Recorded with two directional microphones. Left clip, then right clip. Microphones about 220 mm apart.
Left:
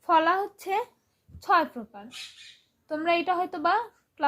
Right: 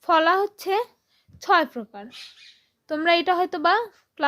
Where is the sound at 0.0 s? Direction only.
45° right (ahead or behind).